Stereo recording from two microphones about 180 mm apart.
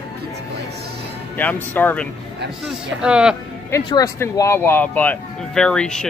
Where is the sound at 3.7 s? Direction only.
20° left (ahead or behind).